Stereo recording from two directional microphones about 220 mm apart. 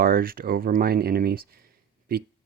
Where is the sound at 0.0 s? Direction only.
40° right (ahead or behind).